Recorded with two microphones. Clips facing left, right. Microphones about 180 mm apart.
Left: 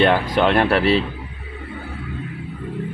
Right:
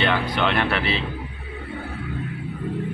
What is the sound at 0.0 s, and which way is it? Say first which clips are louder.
A man's voice: left 6 dB; 40° left (ahead or behind).